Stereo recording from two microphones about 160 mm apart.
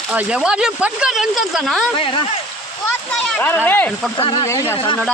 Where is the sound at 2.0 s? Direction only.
35° left (ahead or behind).